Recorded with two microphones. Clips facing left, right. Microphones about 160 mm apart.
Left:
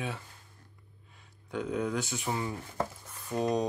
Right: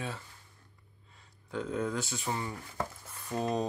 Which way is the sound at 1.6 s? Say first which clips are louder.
Left 1 dB; centre (ahead or behind).